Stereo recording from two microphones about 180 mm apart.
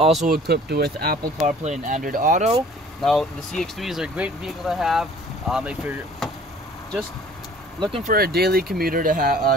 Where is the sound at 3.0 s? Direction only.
Centre (ahead or behind).